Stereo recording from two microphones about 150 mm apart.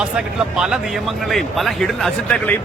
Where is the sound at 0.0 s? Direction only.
5° right (ahead or behind).